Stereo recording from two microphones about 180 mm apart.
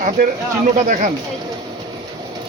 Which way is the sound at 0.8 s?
45° right (ahead or behind).